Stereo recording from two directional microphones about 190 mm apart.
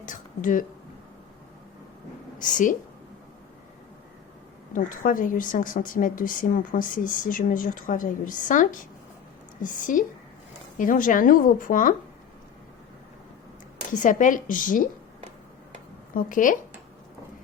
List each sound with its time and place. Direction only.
0.0 s a sound: 45° left (ahead or behind)
2.4 s a woman's voice: 45° left (ahead or behind)
4.7 s a woman's voice: 45° left (ahead or behind)
13.9 s a woman's voice: 40° left (ahead or behind)
16.1 s a woman's voice: 45° left (ahead or behind)